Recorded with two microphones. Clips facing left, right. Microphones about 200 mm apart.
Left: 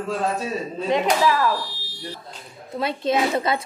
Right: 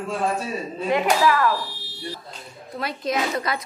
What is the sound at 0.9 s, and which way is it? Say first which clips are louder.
Speech: even; 20° left (ahead or behind).